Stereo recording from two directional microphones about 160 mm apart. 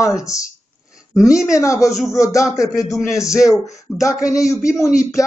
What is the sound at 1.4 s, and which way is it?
Speech, 20° left (ahead or behind).